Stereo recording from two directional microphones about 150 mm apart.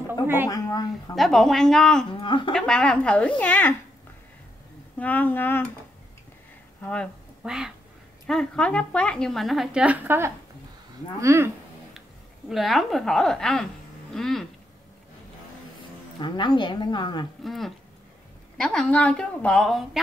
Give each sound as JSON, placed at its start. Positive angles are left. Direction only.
{"t": 0.5, "sound": "a woman's voice", "side_deg": 25}
{"t": 1.1, "sound": "speech", "side_deg": 0}
{"t": 2.2, "sound": "speech", "side_deg": 30}
{"t": 2.5, "sound": "speech", "side_deg": 5}
{"t": 4.9, "sound": "speech", "side_deg": 10}
{"t": 6.8, "sound": "speech", "side_deg": 10}
{"t": 7.4, "sound": "speech", "side_deg": -5}
{"t": 12.4, "sound": "speech", "side_deg": 0}
{"t": 16.2, "sound": "speech", "side_deg": 30}
{"t": 17.4, "sound": "speech", "side_deg": 0}